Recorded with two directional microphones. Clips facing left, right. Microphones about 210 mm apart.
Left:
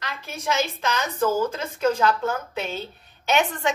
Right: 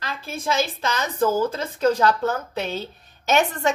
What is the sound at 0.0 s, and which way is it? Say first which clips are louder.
A woman's voice: right 2 dB; 30° right (ahead or behind).